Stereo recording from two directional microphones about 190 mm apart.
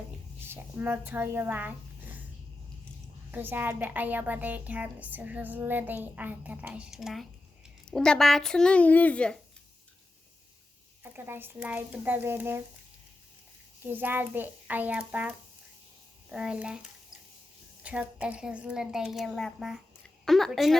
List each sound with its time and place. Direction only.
0.4 s speech: 10° right (ahead or behind)
3.3 s a woman's voice: 10° right (ahead or behind); by 9.4 s 5° left (ahead or behind)
11.0 s a woman's voice: 10° right (ahead or behind)
13.8 s a woman's voice: 10° right (ahead or behind)
17.8 s a woman's voice: 5° right (ahead or behind)